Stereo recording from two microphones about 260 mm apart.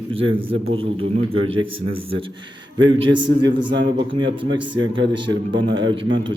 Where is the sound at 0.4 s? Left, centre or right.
Right.